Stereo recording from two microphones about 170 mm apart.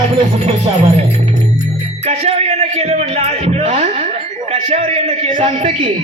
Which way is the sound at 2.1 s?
40° right (ahead or behind).